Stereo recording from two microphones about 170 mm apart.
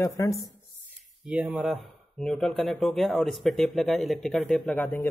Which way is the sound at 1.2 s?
10° right (ahead or behind).